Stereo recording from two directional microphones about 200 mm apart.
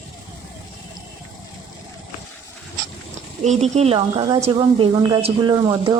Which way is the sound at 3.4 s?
35° right (ahead or behind).